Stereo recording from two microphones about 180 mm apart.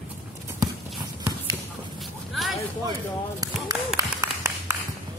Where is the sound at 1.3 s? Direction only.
10° right (ahead or behind).